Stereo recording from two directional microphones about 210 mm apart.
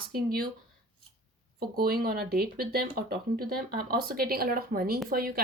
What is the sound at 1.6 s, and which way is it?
Speech, 45° right (ahead or behind).